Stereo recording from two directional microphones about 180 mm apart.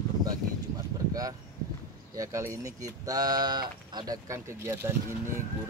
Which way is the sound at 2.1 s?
15° right (ahead or behind).